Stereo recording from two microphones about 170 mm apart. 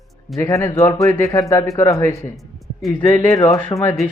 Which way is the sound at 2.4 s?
Centre (ahead or behind).